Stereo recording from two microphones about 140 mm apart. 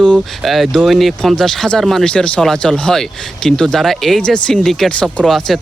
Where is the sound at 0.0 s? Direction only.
5° left (ahead or behind).